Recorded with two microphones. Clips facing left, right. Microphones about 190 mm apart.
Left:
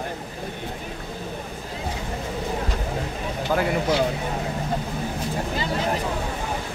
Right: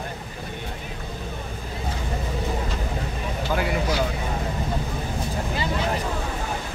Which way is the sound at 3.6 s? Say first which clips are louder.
Left 3 dB; 25° left (ahead or behind).